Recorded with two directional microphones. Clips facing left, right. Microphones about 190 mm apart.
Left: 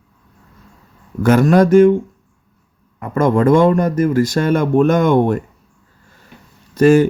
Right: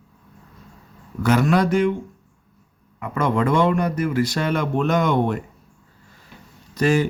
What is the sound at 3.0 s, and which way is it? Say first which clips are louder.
Speech: left 7 dB; 45° left (ahead or behind).